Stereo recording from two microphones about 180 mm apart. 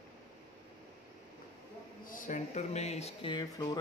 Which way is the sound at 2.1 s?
45° left (ahead or behind).